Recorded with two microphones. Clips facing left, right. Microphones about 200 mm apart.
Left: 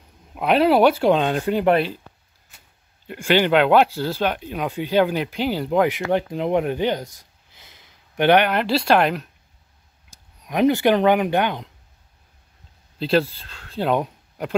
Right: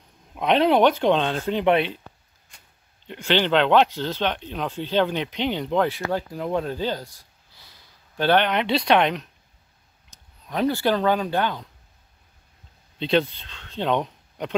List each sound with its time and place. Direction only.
0.3 s speech: 5° left (ahead or behind)
3.1 s speech: 10° left (ahead or behind)
5.9 s speech: 20° left (ahead or behind)
8.5 s speech: centre (ahead or behind)
10.4 s speech: 15° left (ahead or behind)
13.0 s speech: 5° left (ahead or behind)